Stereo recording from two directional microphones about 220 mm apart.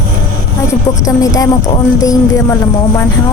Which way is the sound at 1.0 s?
15° left (ahead or behind).